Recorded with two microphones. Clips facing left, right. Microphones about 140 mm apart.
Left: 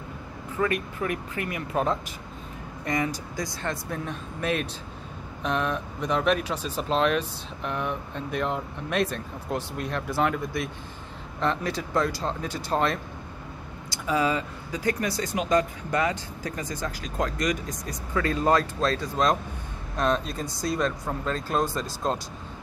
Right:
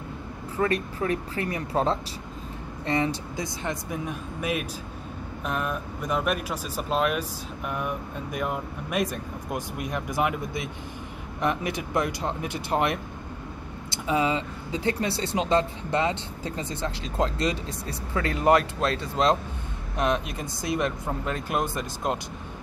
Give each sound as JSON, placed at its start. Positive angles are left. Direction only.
{"t": 0.6, "sound": "speech", "side_deg": -35}
{"t": 3.6, "sound": "speech", "side_deg": -15}